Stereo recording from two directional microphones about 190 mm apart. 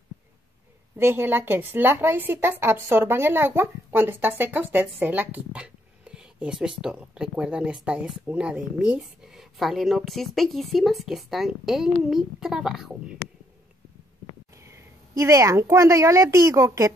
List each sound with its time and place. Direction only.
0.9 s a woman's voice: 10° right (ahead or behind)
14.5 s speech: 15° right (ahead or behind)